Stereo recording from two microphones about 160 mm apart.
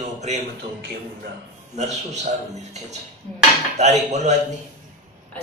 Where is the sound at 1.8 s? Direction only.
45° right (ahead or behind).